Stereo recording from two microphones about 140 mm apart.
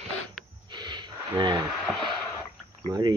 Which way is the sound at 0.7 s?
30° right (ahead or behind).